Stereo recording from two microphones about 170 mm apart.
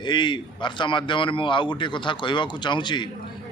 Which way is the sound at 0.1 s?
25° left (ahead or behind).